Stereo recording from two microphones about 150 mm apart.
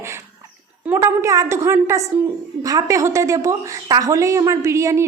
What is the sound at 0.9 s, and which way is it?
A woman's voice, 20° right (ahead or behind).